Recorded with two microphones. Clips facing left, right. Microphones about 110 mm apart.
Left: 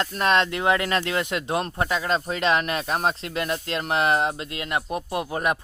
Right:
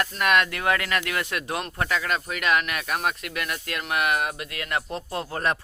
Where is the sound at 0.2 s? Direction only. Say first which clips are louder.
Left 2 dB; 30° left (ahead or behind).